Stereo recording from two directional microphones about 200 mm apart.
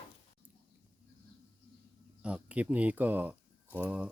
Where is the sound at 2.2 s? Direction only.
5° right (ahead or behind).